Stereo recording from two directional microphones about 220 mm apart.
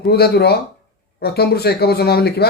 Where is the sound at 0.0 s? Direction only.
45° left (ahead or behind).